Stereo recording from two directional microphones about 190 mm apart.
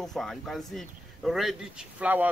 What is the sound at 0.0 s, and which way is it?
Speech, centre (ahead or behind).